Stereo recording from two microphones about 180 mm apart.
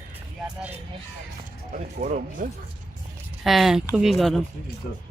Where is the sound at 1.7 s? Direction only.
45° right (ahead or behind).